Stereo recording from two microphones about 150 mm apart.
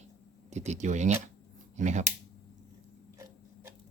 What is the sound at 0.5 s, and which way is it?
Speech, 50° right (ahead or behind).